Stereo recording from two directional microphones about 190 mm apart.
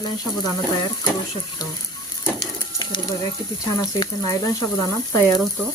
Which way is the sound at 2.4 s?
20° left (ahead or behind).